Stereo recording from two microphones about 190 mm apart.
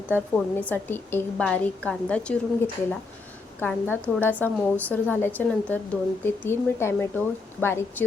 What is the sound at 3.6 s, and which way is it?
Speech, 10° left (ahead or behind).